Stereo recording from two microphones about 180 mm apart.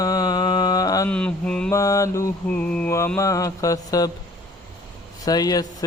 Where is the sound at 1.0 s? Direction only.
5° left (ahead or behind).